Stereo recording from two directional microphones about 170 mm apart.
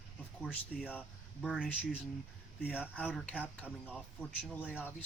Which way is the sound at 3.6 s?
10° left (ahead or behind).